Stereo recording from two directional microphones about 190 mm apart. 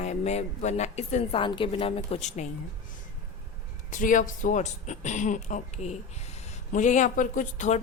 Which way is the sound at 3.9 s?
45° left (ahead or behind).